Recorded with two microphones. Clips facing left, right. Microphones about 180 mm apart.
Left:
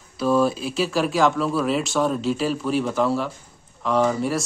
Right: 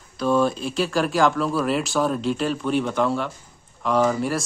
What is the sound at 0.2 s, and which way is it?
Speech, 5° left (ahead or behind).